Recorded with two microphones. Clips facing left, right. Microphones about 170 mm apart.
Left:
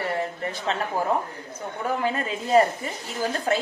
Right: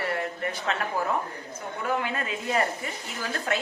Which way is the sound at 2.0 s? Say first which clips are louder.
Left 4 dB; 35° left (ahead or behind).